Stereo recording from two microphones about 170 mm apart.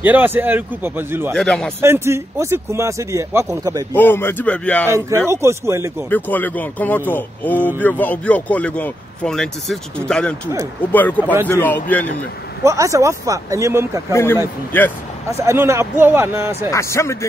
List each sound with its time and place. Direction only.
0.0 s speech: 10° right (ahead or behind)
1.3 s a man's voice: 5° left (ahead or behind)
1.8 s speech: 15° right (ahead or behind)
3.9 s speech: 10° left (ahead or behind)
4.8 s speech: 15° right (ahead or behind)
6.0 s speech: 10° left (ahead or behind)
12.6 s speech: 20° right (ahead or behind)
14.1 s speech: 15° left (ahead or behind)
15.4 s speech: 15° right (ahead or behind)
16.7 s speech: 15° left (ahead or behind)